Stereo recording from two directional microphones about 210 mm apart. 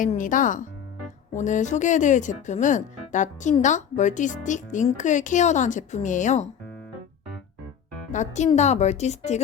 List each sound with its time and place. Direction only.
0.0 s speech: 40° left (ahead or behind)
8.1 s speech: 35° left (ahead or behind)